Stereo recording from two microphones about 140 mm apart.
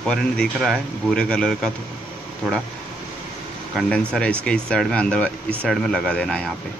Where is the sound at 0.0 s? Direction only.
5° left (ahead or behind).